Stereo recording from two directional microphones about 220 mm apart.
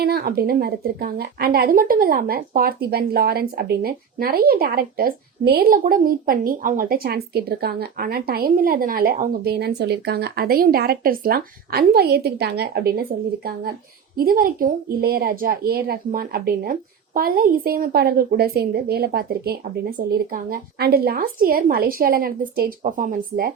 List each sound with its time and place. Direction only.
0.0 s speech: 45° right (ahead or behind)